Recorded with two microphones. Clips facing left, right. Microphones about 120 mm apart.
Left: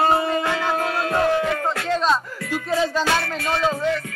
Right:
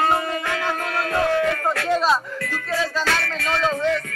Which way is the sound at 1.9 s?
5° right (ahead or behind).